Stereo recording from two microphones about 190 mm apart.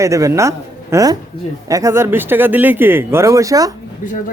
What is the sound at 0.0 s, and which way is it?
Speech, 15° right (ahead or behind).